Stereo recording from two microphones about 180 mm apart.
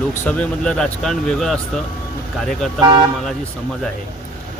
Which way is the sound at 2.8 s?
25° right (ahead or behind).